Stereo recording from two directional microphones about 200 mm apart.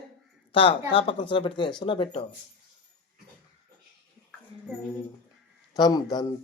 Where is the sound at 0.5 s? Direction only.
25° left (ahead or behind).